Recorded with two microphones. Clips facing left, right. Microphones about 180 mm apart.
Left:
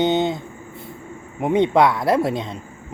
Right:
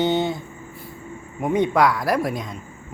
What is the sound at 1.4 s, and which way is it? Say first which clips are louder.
Speech: left 3 dB; 25° left (ahead or behind).